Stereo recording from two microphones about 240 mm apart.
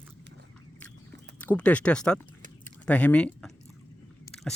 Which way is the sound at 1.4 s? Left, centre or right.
Centre.